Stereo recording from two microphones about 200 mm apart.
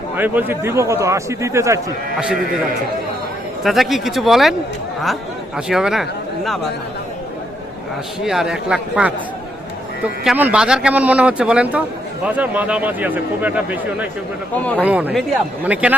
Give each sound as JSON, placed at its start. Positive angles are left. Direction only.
{"t": 0.2, "sound": "speech", "side_deg": -10}
{"t": 3.6, "sound": "speech", "side_deg": 0}
{"t": 5.5, "sound": "speech", "side_deg": -5}
{"t": 8.2, "sound": "speech", "side_deg": 0}